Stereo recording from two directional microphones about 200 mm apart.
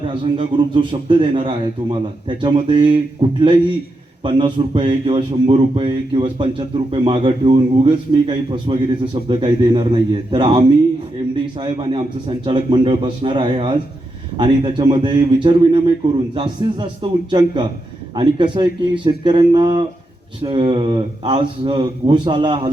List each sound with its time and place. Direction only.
0.2 s a man's voice: 25° right (ahead or behind)
11.6 s a man's voice: 25° right (ahead or behind)